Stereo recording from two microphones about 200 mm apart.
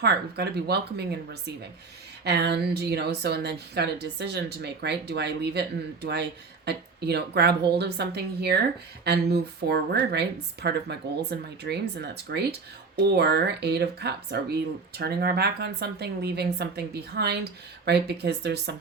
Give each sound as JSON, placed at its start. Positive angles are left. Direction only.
{"t": 0.0, "sound": "speech", "side_deg": -55}